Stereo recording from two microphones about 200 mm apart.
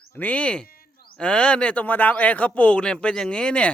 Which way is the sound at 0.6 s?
45° left (ahead or behind).